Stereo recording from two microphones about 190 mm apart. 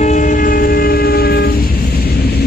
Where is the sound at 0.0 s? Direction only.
40° left (ahead or behind); by 1.5 s 60° left (ahead or behind).